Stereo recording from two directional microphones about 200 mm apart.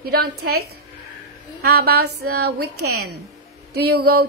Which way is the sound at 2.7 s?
90° right.